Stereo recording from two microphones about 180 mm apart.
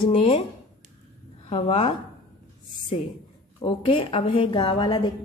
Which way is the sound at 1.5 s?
35° left (ahead or behind).